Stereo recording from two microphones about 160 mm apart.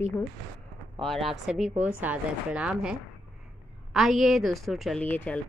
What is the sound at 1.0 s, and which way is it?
A woman's voice, centre (ahead or behind).